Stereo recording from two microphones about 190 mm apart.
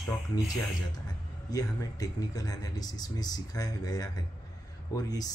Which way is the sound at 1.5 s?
20° left (ahead or behind).